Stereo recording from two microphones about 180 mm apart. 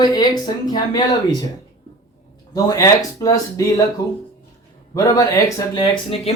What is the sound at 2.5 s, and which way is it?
Speech, 20° left (ahead or behind).